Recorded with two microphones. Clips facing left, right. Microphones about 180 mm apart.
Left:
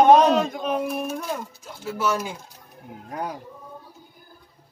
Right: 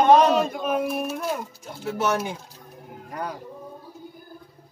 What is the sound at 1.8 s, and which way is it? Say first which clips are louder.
Speech: right 1 dB; 25° right (ahead or behind).